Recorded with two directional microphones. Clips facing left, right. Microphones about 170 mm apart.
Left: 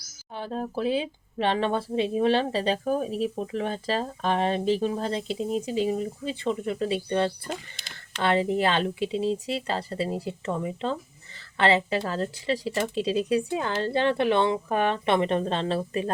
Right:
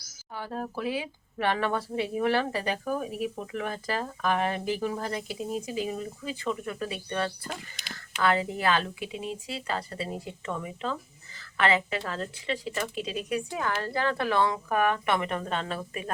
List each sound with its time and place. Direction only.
0.3 s speech: 20° left (ahead or behind)